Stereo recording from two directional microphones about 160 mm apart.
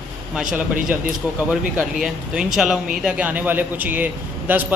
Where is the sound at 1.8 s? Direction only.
5° right (ahead or behind).